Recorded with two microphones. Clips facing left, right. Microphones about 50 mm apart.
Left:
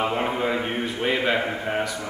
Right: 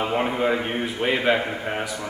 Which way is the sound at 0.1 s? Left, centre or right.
Centre.